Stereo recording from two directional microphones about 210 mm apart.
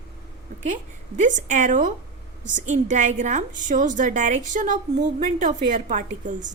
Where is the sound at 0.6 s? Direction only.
35° right (ahead or behind).